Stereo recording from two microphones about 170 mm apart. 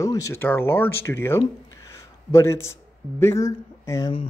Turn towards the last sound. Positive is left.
turn(degrees=15)  # may be behind; listen again after turning